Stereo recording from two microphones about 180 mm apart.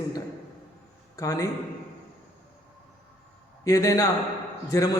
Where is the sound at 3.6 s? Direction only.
20° left (ahead or behind).